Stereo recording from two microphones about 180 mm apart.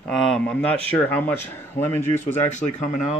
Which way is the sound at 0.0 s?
5° left (ahead or behind).